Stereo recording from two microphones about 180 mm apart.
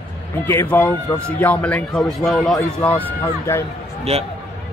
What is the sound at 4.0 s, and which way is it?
Speech, 35° right (ahead or behind).